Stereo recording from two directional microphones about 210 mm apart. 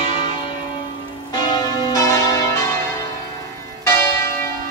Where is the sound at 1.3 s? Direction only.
20° left (ahead or behind).